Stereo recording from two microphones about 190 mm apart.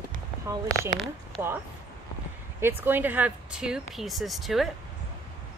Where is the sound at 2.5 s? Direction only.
10° right (ahead or behind).